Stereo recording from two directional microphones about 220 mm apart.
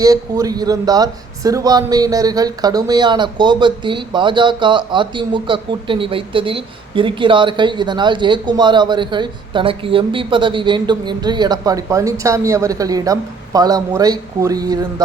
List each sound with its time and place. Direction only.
0.0 s a man's voice: 15° right (ahead or behind)